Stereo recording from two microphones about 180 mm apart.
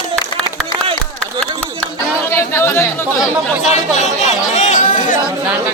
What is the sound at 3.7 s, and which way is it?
Speech, 40° left (ahead or behind).